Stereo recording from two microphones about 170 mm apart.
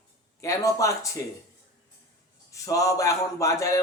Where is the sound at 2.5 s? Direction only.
20° left (ahead or behind).